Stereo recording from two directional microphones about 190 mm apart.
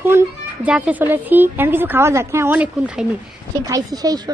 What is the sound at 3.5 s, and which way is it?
Speech, 20° right (ahead or behind).